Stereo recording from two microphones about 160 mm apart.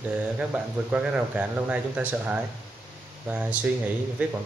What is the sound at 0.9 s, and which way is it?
Speech, 10° right (ahead or behind).